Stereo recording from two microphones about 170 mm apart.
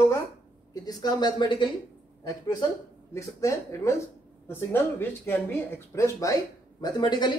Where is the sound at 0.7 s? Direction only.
25° left (ahead or behind).